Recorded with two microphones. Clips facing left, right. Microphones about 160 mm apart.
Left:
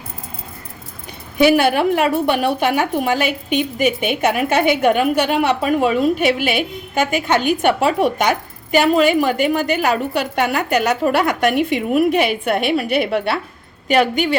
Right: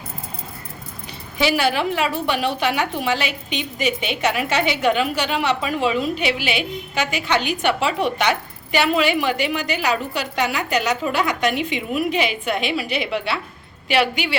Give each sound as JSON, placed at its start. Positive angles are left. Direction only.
{"t": 1.4, "sound": "a woman's voice", "side_deg": 55}